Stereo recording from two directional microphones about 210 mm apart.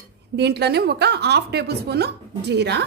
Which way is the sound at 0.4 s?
50° right (ahead or behind).